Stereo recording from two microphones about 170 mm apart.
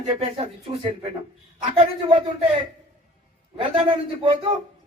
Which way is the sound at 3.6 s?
30° right (ahead or behind).